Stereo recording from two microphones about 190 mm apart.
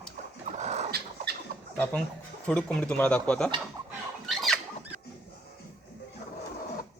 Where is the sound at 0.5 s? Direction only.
35° right (ahead or behind).